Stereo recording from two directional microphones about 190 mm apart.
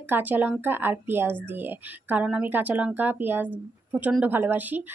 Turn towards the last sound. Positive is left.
turn(degrees=-10)  # may be behind; listen again after turning